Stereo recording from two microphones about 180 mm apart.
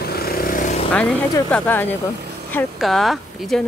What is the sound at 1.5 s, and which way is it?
Speech, 10° left (ahead or behind).